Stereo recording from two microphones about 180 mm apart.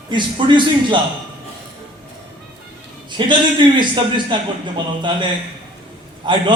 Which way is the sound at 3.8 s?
25° right (ahead or behind).